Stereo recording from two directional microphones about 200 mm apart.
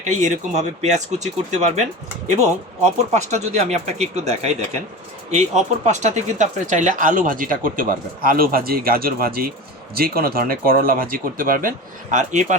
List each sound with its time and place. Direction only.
0.2 s speech: 35° right (ahead or behind)